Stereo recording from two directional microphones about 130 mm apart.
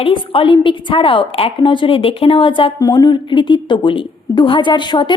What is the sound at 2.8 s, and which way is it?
A woman's voice, 30° left (ahead or behind).